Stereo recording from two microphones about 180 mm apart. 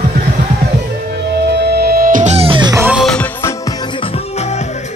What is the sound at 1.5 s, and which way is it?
Music, 65° right (ahead or behind).